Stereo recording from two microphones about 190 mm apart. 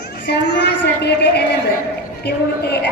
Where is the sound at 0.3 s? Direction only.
65° left (ahead or behind).